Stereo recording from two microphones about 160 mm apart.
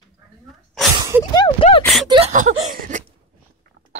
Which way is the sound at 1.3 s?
30° left (ahead or behind).